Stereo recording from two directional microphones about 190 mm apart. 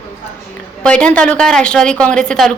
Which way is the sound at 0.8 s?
5° left (ahead or behind).